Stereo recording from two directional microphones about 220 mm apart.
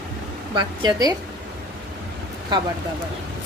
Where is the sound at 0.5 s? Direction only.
20° right (ahead or behind).